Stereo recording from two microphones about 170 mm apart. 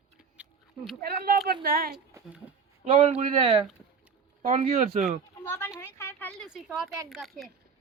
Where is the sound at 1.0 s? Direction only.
60° right (ahead or behind).